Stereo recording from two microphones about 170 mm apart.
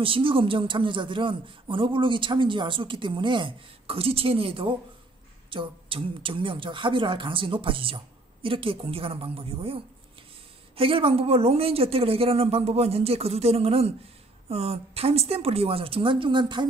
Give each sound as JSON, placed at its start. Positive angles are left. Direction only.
{"t": 0.0, "sound": "a woman's voice", "side_deg": -30}